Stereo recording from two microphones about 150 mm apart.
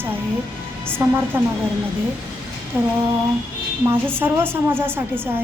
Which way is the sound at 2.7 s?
10° right (ahead or behind).